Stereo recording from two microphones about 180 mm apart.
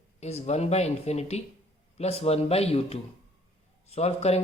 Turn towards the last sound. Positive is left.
turn(degrees=35)  # may be behind; listen again after turning